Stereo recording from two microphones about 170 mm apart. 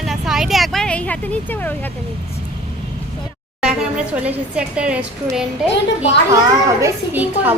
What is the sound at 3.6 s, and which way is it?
Speech, 5° right (ahead or behind).